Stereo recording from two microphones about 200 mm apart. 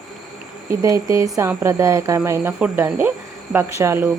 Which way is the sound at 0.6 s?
15° right (ahead or behind).